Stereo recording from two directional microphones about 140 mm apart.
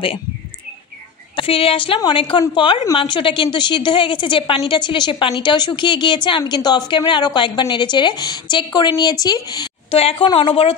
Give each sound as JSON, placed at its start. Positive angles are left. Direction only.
{"t": 1.3, "sound": "a woman's voice", "side_deg": 40}